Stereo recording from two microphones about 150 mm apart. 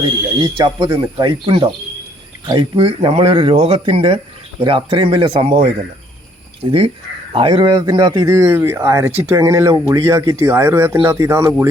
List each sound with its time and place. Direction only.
0.0 s speech: 30° right (ahead or behind)